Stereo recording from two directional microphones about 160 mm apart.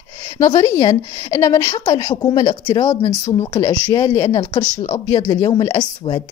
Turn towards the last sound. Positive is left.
turn(degrees=25)  # may be behind; listen again after turning